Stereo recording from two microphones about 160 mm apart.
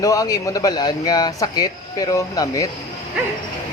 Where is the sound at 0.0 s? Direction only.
20° left (ahead or behind).